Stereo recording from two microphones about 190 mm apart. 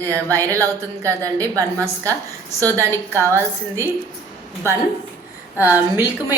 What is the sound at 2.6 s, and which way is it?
Speech, 15° right (ahead or behind).